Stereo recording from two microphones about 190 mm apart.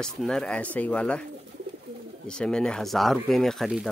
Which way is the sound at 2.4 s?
5° left (ahead or behind).